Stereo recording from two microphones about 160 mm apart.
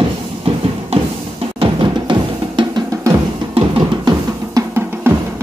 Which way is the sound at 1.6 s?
30° right (ahead or behind).